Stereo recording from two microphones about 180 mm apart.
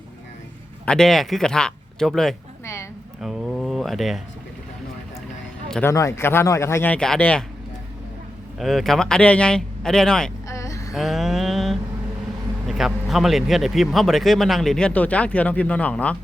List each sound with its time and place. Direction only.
0.9 s speech: centre (ahead or behind)
3.2 s a sound: centre (ahead or behind)
5.6 s a man's voice: 5° left (ahead or behind)
5.9 s speech: 15° left (ahead or behind)
8.5 s speech: centre (ahead or behind)
10.5 s vehicle: 15° left (ahead or behind)
10.9 s mantra: centre (ahead or behind)
12.6 s speech: centre (ahead or behind)